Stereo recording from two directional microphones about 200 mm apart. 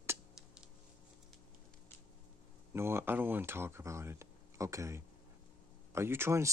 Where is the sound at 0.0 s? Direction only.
10° right (ahead or behind).